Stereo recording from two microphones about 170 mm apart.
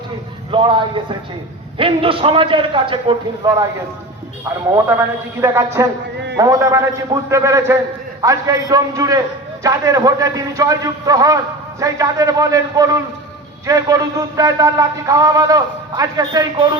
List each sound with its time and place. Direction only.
0.5 s a man's voice: 30° right (ahead or behind)
1.8 s a man's voice: 30° right (ahead or behind)
5.4 s a man's voice: 20° right (ahead or behind)